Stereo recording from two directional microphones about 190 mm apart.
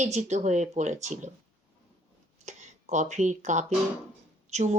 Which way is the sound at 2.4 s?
40° right (ahead or behind).